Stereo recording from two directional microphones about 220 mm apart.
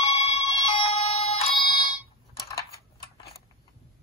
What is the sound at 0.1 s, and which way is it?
Music, 30° left (ahead or behind).